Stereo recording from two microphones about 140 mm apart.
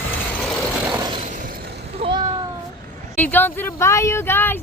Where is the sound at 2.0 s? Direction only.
35° right (ahead or behind).